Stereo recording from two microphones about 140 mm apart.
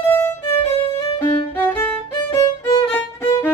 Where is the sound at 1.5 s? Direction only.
10° left (ahead or behind).